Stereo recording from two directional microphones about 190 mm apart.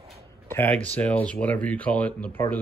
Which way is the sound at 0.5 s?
10° left (ahead or behind).